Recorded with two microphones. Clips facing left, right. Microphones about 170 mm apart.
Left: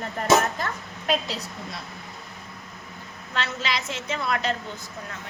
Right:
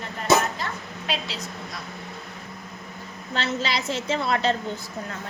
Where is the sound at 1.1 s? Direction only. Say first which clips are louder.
Left 5 dB; 40° left (ahead or behind).